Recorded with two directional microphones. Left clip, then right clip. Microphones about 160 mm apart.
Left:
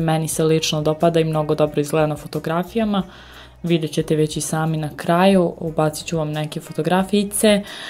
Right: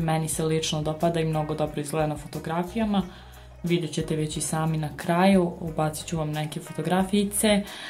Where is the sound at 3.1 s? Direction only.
40° left (ahead or behind).